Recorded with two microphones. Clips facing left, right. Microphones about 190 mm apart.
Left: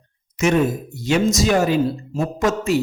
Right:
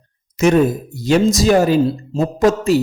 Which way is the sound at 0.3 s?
35° right (ahead or behind).